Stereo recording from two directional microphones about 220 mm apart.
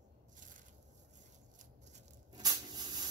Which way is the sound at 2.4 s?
20° right (ahead or behind).